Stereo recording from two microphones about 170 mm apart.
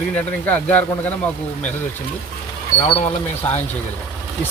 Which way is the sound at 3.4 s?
10° left (ahead or behind).